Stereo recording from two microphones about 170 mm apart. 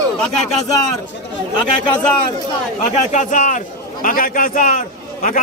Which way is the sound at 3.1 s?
45° left (ahead or behind).